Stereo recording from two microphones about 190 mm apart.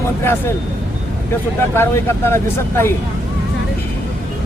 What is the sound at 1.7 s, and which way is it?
Speech, 15° left (ahead or behind).